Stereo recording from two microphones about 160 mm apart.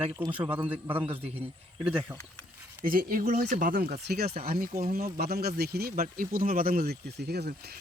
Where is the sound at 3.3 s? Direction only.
55° right (ahead or behind); by 7.8 s 80° right.